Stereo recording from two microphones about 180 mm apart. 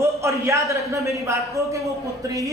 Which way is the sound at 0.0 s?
15° right (ahead or behind).